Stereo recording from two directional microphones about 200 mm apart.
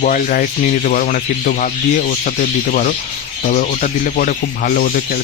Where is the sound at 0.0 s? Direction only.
45° left (ahead or behind).